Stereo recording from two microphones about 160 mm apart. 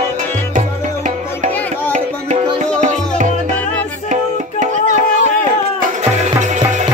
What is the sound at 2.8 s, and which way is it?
Music, 50° right (ahead or behind).